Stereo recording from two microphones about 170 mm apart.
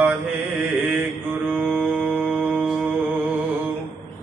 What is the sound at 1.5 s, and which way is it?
Music, 10° right (ahead or behind).